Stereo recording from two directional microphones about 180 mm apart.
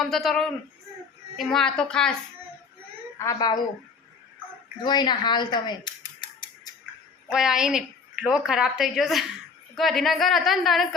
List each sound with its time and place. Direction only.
0.0 s a woman's voice: centre (ahead or behind)
3.3 s speech: 25° left (ahead or behind)
4.8 s speech: 25° left (ahead or behind)
7.3 s a woman's voice: 5° right (ahead or behind)